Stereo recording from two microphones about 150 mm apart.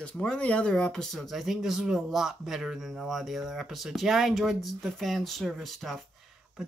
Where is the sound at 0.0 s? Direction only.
5° left (ahead or behind).